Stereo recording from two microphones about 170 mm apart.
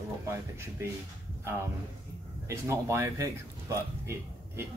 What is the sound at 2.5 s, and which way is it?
A man's voice, 15° right (ahead or behind).